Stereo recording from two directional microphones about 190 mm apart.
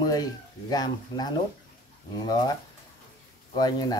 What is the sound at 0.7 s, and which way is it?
Speech, 20° left (ahead or behind).